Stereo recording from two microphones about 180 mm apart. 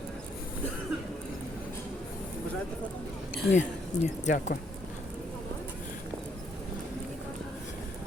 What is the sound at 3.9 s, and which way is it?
Speech, 40° left (ahead or behind).